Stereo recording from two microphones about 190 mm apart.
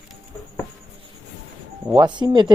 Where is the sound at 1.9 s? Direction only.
25° right (ahead or behind).